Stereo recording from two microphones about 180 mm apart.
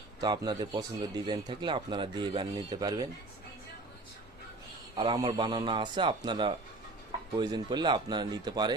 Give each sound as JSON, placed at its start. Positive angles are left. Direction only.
{"t": 0.2, "sound": "speech", "side_deg": -20}
{"t": 4.9, "sound": "speech", "side_deg": -25}